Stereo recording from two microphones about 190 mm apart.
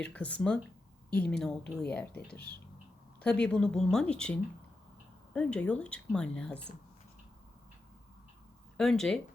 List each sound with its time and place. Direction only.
0.0 s a woman's voice: 5° left (ahead or behind)
2.1 s speech: 55° left (ahead or behind)
3.4 s a woman's voice: 5° left (ahead or behind)
8.8 s speech: centre (ahead or behind)